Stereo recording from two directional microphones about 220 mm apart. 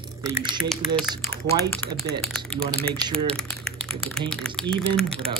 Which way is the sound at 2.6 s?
25° right (ahead or behind).